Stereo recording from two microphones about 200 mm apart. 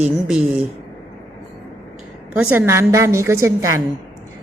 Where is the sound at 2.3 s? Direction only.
10° right (ahead or behind).